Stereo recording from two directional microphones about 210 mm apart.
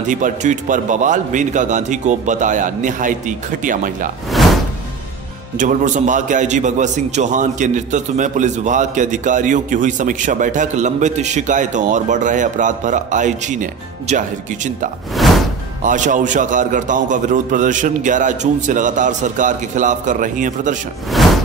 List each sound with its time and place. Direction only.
0.1 s a man's voice: 35° right (ahead or behind)
5.6 s a man's voice: 35° right (ahead or behind)